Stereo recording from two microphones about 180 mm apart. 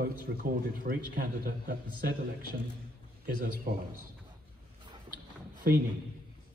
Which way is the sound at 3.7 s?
55° right (ahead or behind).